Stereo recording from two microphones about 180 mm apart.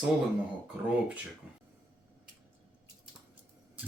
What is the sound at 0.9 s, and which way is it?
Speech, 10° right (ahead or behind).